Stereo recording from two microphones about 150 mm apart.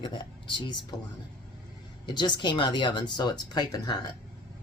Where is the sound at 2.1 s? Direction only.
30° left (ahead or behind).